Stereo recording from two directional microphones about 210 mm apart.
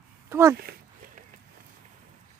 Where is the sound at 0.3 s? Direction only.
15° right (ahead or behind).